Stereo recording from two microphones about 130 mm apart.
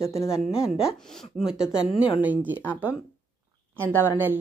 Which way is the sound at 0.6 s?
5° right (ahead or behind).